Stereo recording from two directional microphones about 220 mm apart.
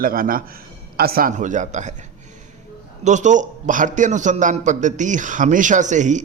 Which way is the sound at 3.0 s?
35° right (ahead or behind).